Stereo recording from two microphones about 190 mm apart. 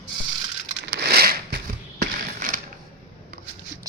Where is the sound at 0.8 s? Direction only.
60° right (ahead or behind).